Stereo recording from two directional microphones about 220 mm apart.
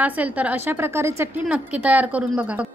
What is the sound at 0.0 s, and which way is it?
A woman's voice, 5° right (ahead or behind).